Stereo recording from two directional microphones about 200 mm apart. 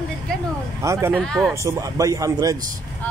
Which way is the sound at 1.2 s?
Centre (ahead or behind).